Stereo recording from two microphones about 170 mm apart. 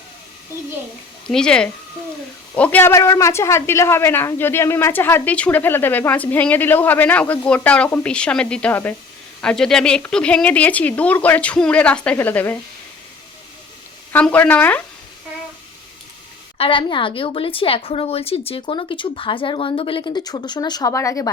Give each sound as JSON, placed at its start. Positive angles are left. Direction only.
{"t": 1.3, "sound": "speech", "side_deg": 5}
{"t": 14.1, "sound": "speech", "side_deg": 10}
{"t": 16.6, "sound": "a woman's voice", "side_deg": 30}